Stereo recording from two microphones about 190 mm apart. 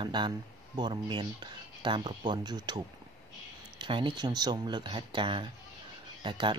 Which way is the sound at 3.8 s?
25° right (ahead or behind).